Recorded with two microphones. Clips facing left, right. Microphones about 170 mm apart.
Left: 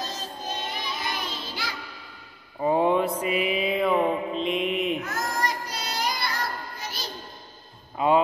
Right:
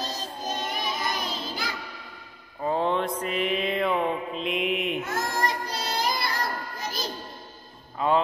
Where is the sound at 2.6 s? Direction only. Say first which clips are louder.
Left 4 dB; 15° left (ahead or behind).